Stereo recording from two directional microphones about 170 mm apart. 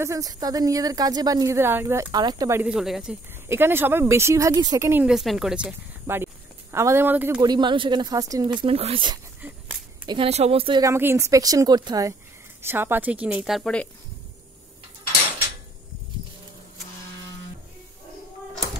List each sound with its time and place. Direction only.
0.0 s a woman's voice: 20° right (ahead or behind)
2.6 s speech: 5° right (ahead or behind)
5.0 s a woman's voice: centre (ahead or behind)
7.4 s a woman's voice: 25° right (ahead or behind)
8.5 s speech: 35° right (ahead or behind)
10.8 s a woman's voice: 15° right (ahead or behind); by 13.8 s centre (ahead or behind)